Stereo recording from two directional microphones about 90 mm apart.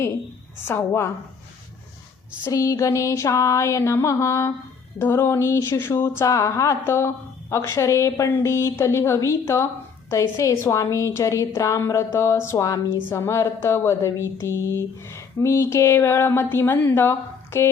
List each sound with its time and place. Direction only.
0.7 s a woman's voice: 30° left (ahead or behind)
2.5 s speech: 40° left (ahead or behind)